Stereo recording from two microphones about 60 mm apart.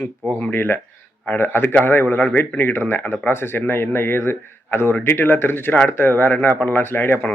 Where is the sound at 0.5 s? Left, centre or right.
Left.